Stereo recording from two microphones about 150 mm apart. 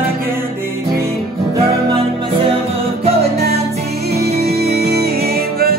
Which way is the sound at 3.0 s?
45° right (ahead or behind).